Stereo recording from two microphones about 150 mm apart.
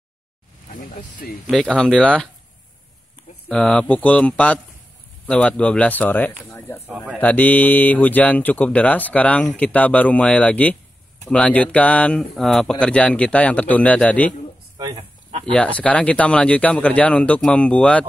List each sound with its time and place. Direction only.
0.7 s speech: 65° left (ahead or behind)
1.5 s speech: 5° left (ahead or behind)
3.4 s speech: 5° left (ahead or behind)
15.0 s a sound: 40° right (ahead or behind)
15.5 s speech: 10° left (ahead or behind)